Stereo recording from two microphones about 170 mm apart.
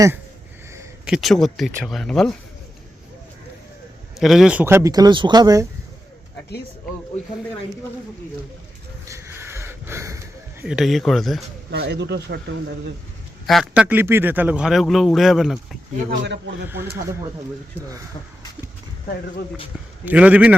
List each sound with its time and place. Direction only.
1.0 s speech: centre (ahead or behind)
4.2 s speech: centre (ahead or behind); by 5.6 s 20° right (ahead or behind)
9.0 s a sound: 15° right (ahead or behind)
10.6 s speech: 5° right (ahead or behind)
11.7 s speech: 85° right
13.5 s speech: centre (ahead or behind)
13.8 s speech: 10° right (ahead or behind)
16.2 s a man's voice: 90° right
16.6 s speech: 15° right (ahead or behind)
20.1 s speech: 10° right (ahead or behind)